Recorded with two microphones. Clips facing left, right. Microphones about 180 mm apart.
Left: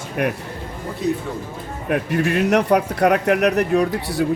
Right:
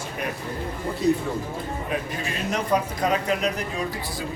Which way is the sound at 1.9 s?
65° left (ahead or behind).